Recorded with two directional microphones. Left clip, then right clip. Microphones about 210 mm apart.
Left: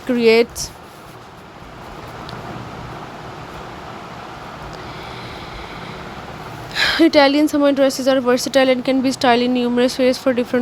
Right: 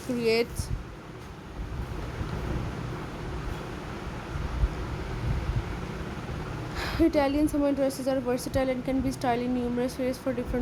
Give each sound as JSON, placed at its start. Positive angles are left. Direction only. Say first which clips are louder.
{"t": 0.2, "sound": "a woman's voice", "louder": "left 13 dB", "side_deg": 20}
{"t": 6.7, "sound": "a woman's voice", "louder": "left 13 dB", "side_deg": 20}